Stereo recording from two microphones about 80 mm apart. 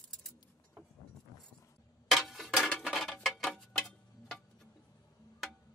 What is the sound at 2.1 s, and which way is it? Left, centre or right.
Clock, centre.